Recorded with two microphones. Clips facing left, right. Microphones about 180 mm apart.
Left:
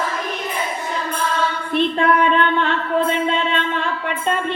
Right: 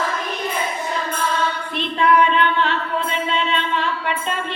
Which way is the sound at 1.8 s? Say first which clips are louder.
Left 1 dB; 50° left (ahead or behind).